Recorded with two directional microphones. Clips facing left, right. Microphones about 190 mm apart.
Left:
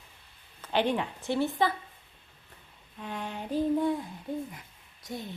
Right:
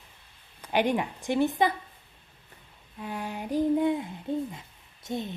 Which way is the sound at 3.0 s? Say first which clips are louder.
Right 2 dB; 10° right (ahead or behind).